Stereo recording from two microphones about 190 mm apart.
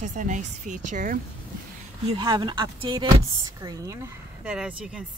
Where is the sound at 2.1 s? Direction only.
25° right (ahead or behind).